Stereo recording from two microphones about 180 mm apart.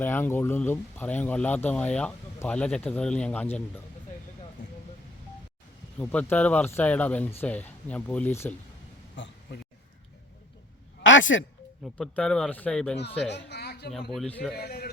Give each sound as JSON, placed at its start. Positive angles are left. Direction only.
{"t": 0.0, "sound": "speech", "side_deg": 10}
{"t": 6.0, "sound": "speech", "side_deg": 10}
{"t": 9.1, "sound": "a sound", "side_deg": 85}
{"t": 11.0, "sound": "a sound", "side_deg": 90}
{"t": 11.9, "sound": "speech", "side_deg": 5}
{"t": 13.3, "sound": "speech", "side_deg": 65}
{"t": 14.1, "sound": "speech", "side_deg": 5}
{"t": 14.5, "sound": "speech", "side_deg": 60}